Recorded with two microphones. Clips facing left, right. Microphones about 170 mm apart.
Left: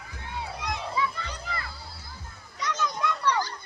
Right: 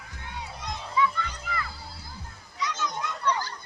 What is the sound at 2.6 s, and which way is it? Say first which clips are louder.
Children playing: left 2 dB; 60° left (ahead or behind).